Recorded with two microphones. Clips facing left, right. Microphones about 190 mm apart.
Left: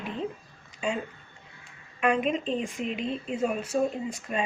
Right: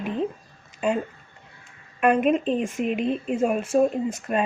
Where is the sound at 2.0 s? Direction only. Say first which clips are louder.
Right 6 dB; 50° right (ahead or behind).